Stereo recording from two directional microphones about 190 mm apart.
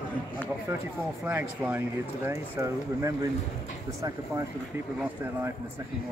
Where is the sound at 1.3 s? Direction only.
10° right (ahead or behind).